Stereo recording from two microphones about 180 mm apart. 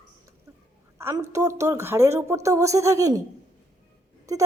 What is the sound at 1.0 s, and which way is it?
Speech, 15° right (ahead or behind).